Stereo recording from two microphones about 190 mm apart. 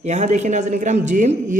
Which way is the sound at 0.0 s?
40° right (ahead or behind).